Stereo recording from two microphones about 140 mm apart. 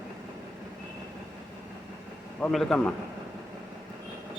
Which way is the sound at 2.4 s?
5° left (ahead or behind).